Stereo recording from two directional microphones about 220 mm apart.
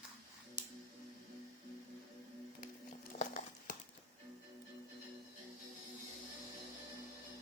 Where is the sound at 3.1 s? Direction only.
35° left (ahead or behind).